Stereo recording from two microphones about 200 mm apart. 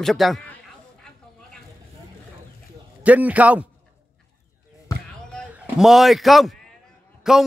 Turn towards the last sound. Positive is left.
turn(degrees=0)  # may be behind; listen again after turning